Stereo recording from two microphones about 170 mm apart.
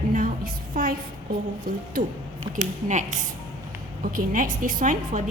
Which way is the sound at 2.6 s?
45° right (ahead or behind).